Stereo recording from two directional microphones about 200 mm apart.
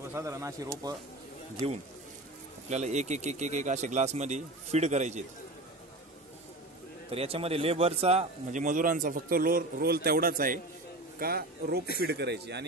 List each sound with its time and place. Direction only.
0.1 s speech: 15° right (ahead or behind)
1.6 s a man's voice: 30° right (ahead or behind)
7.1 s a man's voice: 30° right (ahead or behind); by 12.6 s 55° right (ahead or behind)